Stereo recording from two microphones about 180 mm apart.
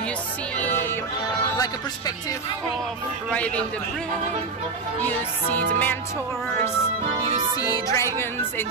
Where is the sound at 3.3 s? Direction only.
5° left (ahead or behind).